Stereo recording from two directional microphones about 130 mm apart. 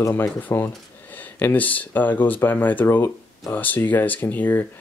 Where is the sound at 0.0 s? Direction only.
20° left (ahead or behind).